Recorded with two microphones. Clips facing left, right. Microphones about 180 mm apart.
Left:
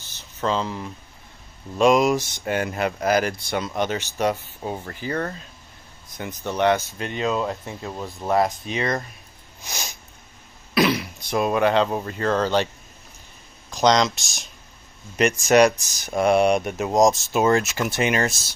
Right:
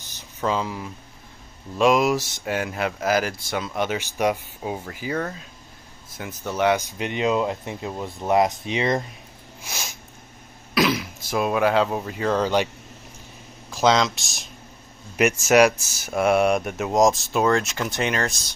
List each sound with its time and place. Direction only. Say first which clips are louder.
0.1 s speech: even; 10° right (ahead or behind)
9.6 s a sound: left 1 dB; 5° right (ahead or behind)
10.7 s speech: left 1 dB; centre (ahead or behind)
13.7 s speech: left 1 dB; 5° right (ahead or behind)